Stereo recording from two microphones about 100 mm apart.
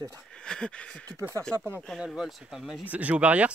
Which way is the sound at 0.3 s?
10° left (ahead or behind).